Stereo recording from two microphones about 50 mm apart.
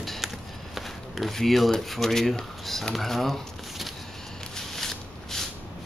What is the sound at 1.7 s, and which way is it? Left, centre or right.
Speech, centre.